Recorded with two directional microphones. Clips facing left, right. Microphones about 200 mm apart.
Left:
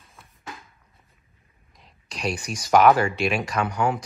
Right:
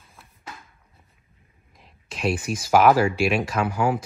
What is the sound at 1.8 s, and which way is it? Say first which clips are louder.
Speech: right 3 dB; centre (ahead or behind).